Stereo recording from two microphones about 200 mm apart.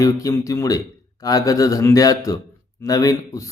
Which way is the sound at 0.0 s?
15° left (ahead or behind).